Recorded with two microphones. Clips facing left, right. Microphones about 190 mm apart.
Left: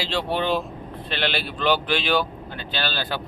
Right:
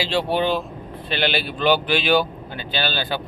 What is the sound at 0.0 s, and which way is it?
Speech, 5° right (ahead or behind).